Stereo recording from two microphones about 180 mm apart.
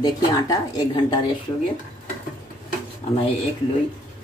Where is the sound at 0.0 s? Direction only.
20° left (ahead or behind).